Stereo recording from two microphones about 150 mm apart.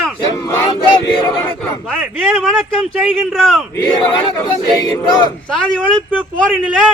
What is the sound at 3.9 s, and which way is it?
Choir, 30° left (ahead or behind).